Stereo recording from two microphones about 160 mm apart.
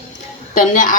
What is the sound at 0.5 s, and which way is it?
Speech, 55° left (ahead or behind).